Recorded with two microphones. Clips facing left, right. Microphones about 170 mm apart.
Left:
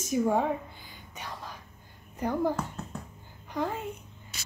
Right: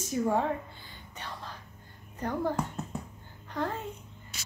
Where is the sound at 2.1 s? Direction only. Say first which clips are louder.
Left 3 dB; 10° left (ahead or behind).